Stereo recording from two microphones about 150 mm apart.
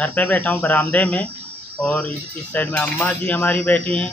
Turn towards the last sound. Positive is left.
turn(degrees=10)  # may be behind; listen again after turning